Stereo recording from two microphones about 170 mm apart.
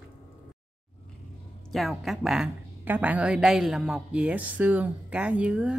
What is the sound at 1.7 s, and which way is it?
A woman's voice, centre (ahead or behind).